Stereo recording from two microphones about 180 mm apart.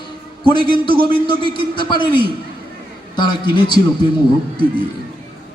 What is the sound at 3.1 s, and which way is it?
Speech, 25° left (ahead or behind).